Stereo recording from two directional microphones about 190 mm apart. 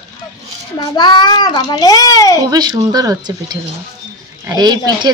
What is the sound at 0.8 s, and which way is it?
A child's voice, 20° left (ahead or behind).